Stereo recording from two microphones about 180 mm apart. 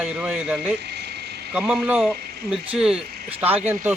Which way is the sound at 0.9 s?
65° right (ahead or behind).